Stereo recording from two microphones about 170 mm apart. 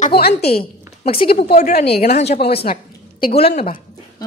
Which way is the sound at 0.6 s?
35° left (ahead or behind).